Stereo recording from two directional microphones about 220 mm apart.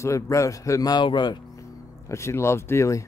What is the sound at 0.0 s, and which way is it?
Speech, 15° left (ahead or behind).